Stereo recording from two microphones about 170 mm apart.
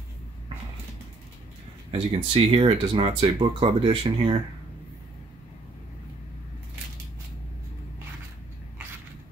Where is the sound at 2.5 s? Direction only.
35° right (ahead or behind).